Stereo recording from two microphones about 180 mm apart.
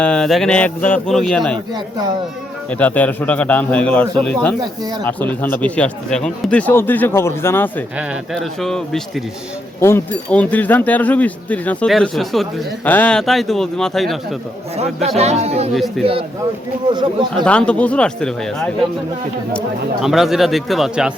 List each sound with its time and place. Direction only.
0.0 s a man's voice: 5° left (ahead or behind)
1.5 s speech: 25° right (ahead or behind)
2.6 s speech: 10° left (ahead or behind)
4.6 s speech: 20° right (ahead or behind)
5.0 s speech: 10° left (ahead or behind)
7.9 s a man's voice: centre (ahead or behind)
15.2 s speech: 35° right (ahead or behind)
16.0 s a man's voice: centre (ahead or behind)
16.9 s speech: 25° right (ahead or behind)
17.4 s a man's voice: 5° left (ahead or behind)